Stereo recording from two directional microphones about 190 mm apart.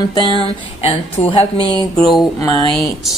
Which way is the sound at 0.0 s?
25° left (ahead or behind).